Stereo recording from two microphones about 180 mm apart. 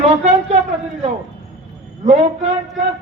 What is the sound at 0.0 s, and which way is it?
Speech, 35° right (ahead or behind).